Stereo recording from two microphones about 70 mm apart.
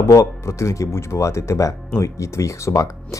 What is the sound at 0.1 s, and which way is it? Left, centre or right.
Speech, left.